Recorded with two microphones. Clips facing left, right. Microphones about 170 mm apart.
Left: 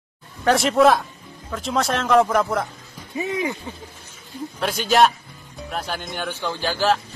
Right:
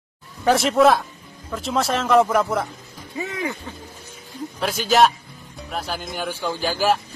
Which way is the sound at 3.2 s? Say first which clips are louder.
Left 3 dB; 20° left (ahead or behind).